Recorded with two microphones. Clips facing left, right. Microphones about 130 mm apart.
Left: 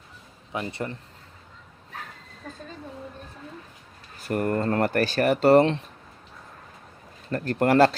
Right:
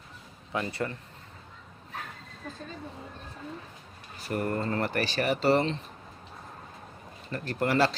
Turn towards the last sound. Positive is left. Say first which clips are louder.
# left 7 dB
turn(degrees=55)  # may be behind; listen again after turning